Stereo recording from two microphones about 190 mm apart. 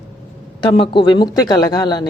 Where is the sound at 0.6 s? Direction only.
25° left (ahead or behind).